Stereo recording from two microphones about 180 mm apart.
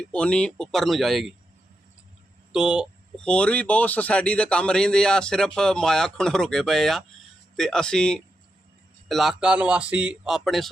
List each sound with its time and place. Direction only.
0.1 s speech: 5° left (ahead or behind)
2.5 s speech: 5° right (ahead or behind)
3.2 s a man's voice: 5° left (ahead or behind)